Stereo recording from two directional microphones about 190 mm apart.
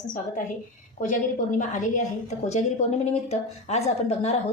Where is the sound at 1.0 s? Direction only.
45° left (ahead or behind).